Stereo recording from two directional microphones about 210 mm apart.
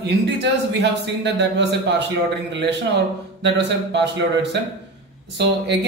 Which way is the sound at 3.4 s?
55° right (ahead or behind).